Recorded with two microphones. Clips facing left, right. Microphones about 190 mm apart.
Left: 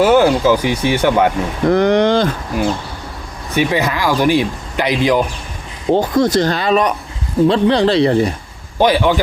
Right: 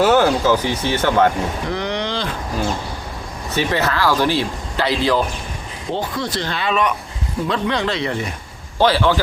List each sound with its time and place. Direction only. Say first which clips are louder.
0.0 s speech: left 3 dB; 15° left (ahead or behind)
1.6 s speech: left 11 dB; 50° left (ahead or behind)
3.5 s speech: left 3 dB; 15° left (ahead or behind)
5.9 s speech: left 10 dB; 45° left (ahead or behind)
8.8 s speech: left 3 dB; 15° left (ahead or behind)